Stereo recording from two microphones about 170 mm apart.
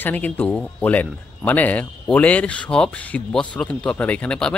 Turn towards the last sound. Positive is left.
turn(degrees=5)  # may be behind; listen again after turning